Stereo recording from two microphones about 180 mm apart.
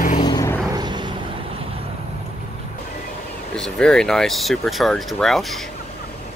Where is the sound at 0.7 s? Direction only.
25° right (ahead or behind).